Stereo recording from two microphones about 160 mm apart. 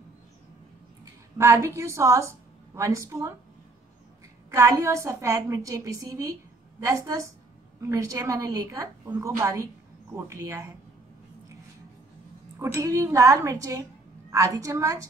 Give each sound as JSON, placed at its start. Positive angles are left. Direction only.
{"t": 1.4, "sound": "a woman's voice", "side_deg": -15}
{"t": 4.5, "sound": "a woman's voice", "side_deg": -20}
{"t": 12.5, "sound": "a woman's voice", "side_deg": -20}